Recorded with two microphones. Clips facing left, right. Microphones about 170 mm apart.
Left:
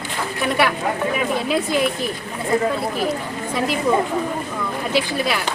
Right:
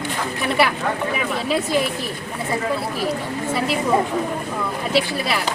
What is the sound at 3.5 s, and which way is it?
Speech, centre (ahead or behind).